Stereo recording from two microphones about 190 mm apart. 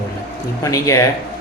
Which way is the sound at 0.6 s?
15° left (ahead or behind).